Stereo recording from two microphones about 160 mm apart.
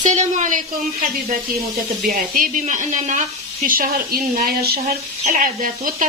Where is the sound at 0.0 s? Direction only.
45° right (ahead or behind).